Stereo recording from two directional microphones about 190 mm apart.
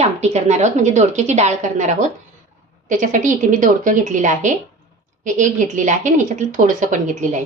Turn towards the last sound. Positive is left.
turn(degrees=-40)  # may be behind; listen again after turning